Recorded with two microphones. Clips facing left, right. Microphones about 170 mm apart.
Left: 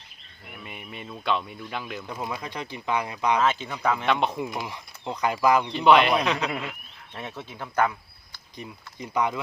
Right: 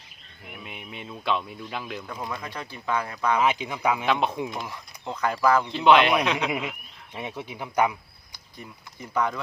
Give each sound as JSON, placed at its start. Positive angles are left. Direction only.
{"t": 0.4, "sound": "speech", "side_deg": 0}
{"t": 2.4, "sound": "speech", "side_deg": 15}
{"t": 3.4, "sound": "speech", "side_deg": -15}
{"t": 4.6, "sound": "speech", "side_deg": 15}
{"t": 5.6, "sound": "speech", "side_deg": 0}
{"t": 6.6, "sound": "frog", "side_deg": 0}
{"t": 7.2, "sound": "speech", "side_deg": -15}
{"t": 8.5, "sound": "speech", "side_deg": 15}